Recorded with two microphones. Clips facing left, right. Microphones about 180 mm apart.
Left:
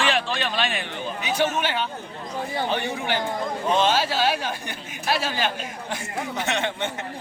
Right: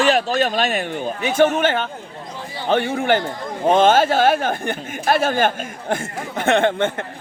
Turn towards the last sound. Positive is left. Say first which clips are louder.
# right 9 dB
turn(degrees=-55)  # may be behind; listen again after turning